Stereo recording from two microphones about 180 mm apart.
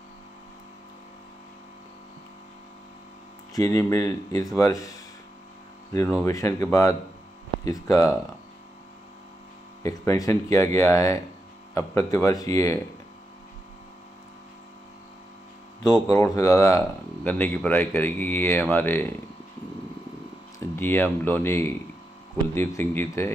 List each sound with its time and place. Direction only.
3.5 s speech: 15° left (ahead or behind)
6.1 s speech: 15° left (ahead or behind)
9.8 s speech: 20° left (ahead or behind)
15.8 s speech: 20° left (ahead or behind)
20.5 s speech: 10° left (ahead or behind)